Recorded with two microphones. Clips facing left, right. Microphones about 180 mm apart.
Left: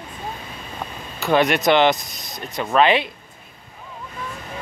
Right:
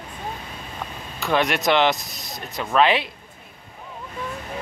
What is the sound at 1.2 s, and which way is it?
Speech, centre (ahead or behind).